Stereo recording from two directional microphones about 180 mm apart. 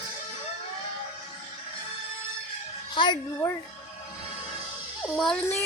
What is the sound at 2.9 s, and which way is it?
Speech, 25° left (ahead or behind).